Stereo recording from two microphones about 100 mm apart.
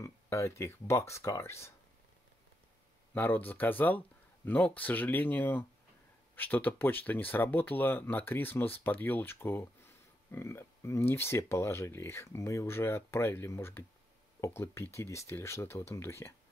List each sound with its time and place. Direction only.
0.0 s speech: 30° left (ahead or behind)
3.2 s speech: 20° left (ahead or behind)